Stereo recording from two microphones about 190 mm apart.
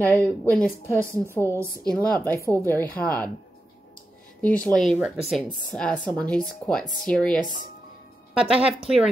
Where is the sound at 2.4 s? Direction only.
10° left (ahead or behind).